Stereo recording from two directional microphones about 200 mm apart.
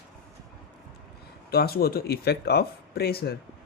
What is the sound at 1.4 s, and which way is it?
Speech, 50° left (ahead or behind).